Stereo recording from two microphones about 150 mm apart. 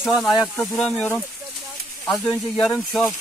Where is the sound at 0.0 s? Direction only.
Centre (ahead or behind).